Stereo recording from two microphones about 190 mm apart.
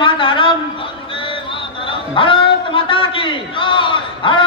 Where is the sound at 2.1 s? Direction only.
25° left (ahead or behind).